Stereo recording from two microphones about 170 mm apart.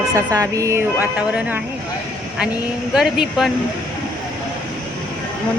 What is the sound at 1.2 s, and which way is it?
Speech, 5° right (ahead or behind).